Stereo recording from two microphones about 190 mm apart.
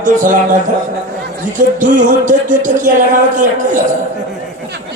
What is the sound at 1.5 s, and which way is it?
Music, 40° right (ahead or behind).